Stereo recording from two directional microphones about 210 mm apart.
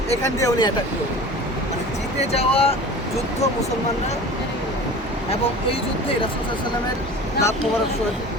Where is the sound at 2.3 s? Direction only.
30° left (ahead or behind).